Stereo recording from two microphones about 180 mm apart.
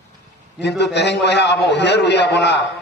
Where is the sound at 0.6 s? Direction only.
70° left (ahead or behind).